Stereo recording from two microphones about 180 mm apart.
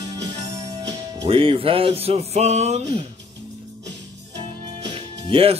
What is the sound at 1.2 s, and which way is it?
Music, 30° right (ahead or behind).